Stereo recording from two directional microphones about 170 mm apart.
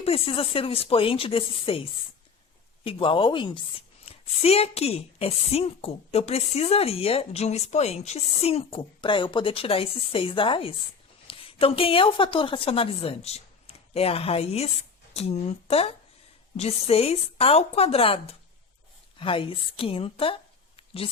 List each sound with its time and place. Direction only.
0.0 s a woman's voice: 35° left (ahead or behind)